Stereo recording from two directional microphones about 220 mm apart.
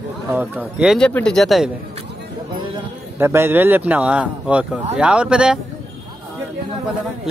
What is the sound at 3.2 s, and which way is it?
Speech, 10° right (ahead or behind).